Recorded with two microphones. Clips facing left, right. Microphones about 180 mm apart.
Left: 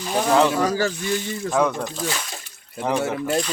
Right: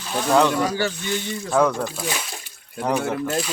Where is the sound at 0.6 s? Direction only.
40° left (ahead or behind).